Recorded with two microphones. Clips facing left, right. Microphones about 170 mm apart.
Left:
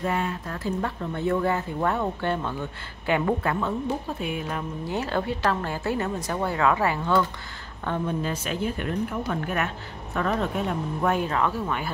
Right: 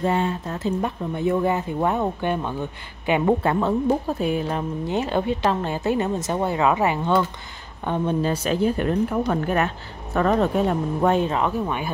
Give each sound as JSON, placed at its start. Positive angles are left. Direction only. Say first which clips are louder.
{"t": 0.0, "sound": "speech", "louder": "right 5 dB", "side_deg": -30}
{"t": 3.6, "sound": "speech", "louder": "right 7 dB", "side_deg": -35}
{"t": 11.1, "sound": "speech", "louder": "right 4 dB", "side_deg": -20}